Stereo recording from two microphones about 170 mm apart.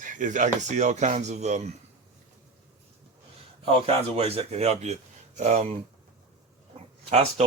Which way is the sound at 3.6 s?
35° right (ahead or behind).